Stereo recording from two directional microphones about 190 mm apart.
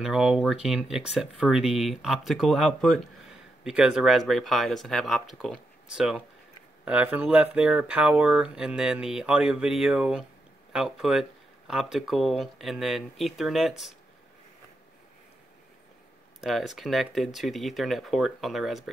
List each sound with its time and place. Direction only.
0.0 s speech: centre (ahead or behind)
16.3 s speech: centre (ahead or behind)